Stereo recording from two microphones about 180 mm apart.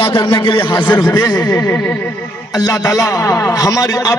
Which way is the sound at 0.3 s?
30° left (ahead or behind).